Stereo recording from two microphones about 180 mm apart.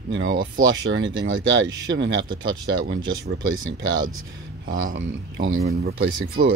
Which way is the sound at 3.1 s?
90° right.